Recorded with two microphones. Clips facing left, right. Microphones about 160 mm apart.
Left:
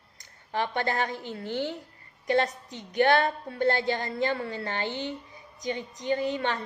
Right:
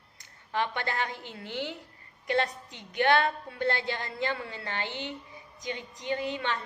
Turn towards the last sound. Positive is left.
turn(degrees=45)  # may be behind; listen again after turning